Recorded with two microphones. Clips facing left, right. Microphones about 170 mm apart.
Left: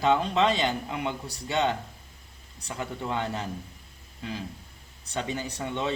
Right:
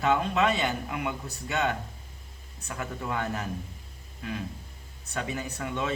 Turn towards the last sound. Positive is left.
turn(degrees=30)  # may be behind; listen again after turning